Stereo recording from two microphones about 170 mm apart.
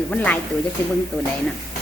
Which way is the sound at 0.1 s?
5° left (ahead or behind).